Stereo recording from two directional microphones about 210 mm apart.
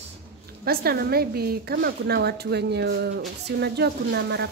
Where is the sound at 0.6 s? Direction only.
45° right (ahead or behind).